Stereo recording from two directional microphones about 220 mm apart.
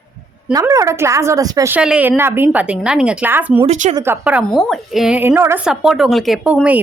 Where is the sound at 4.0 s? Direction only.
10° right (ahead or behind).